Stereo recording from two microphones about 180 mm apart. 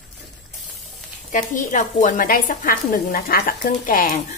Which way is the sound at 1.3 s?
45° left (ahead or behind).